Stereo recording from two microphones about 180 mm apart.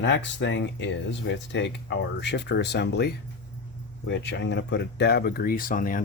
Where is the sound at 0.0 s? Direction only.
90° left.